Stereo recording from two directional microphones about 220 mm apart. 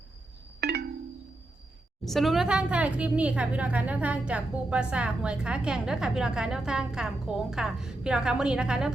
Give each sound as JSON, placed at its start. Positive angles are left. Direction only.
{"t": 0.6, "sound": "wind chime", "side_deg": -50}
{"t": 2.0, "sound": "speech", "side_deg": 0}